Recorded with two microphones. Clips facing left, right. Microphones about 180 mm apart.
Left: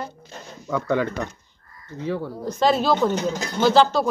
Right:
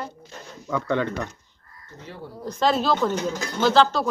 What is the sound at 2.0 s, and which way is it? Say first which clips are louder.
Speech: left 12 dB; 90° left.